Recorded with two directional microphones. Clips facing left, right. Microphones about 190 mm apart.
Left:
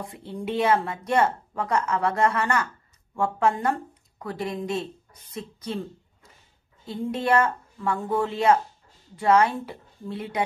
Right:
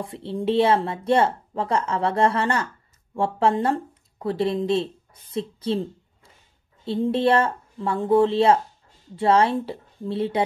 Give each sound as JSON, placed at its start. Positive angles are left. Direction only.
{"t": 0.0, "sound": "speech", "side_deg": -30}
{"t": 6.8, "sound": "speech", "side_deg": -30}